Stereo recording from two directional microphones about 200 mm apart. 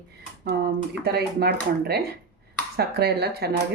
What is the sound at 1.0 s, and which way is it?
Speech, 55° right (ahead or behind).